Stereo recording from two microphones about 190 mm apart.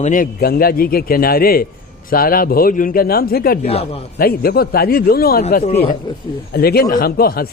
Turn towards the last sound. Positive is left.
turn(degrees=50)  # may be behind; listen again after turning